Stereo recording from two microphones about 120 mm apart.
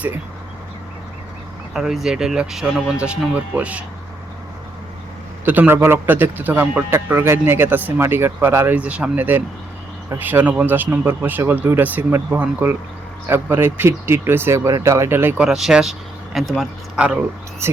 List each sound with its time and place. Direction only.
1.7 s speech: 5° right (ahead or behind)
5.5 s a man's voice: 15° right (ahead or behind)
15.4 s speech: 5° right (ahead or behind)
17.6 s speech: 20° right (ahead or behind)